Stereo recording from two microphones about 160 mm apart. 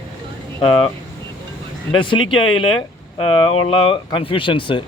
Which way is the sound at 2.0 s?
30° left (ahead or behind).